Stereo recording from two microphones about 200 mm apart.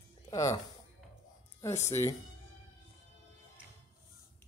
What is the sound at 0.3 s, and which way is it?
Speech, 15° left (ahead or behind).